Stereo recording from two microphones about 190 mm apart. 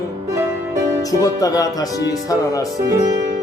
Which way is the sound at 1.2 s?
20° left (ahead or behind).